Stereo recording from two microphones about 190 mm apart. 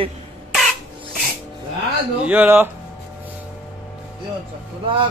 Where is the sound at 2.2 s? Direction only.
10° right (ahead or behind).